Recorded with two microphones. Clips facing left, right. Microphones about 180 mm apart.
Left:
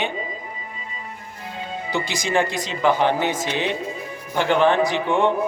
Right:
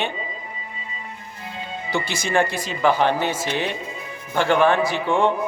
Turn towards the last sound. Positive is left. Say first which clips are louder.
# even
turn(degrees=20)  # may be behind; listen again after turning